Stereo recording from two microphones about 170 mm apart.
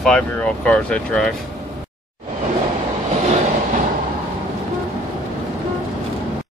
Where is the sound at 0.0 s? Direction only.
5° left (ahead or behind).